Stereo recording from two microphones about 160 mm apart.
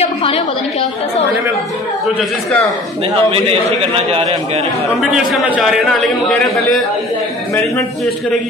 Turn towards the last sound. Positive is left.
turn(degrees=0)  # may be behind; listen again after turning